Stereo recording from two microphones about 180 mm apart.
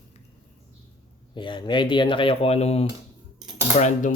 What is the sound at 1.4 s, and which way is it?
Speech, 25° left (ahead or behind).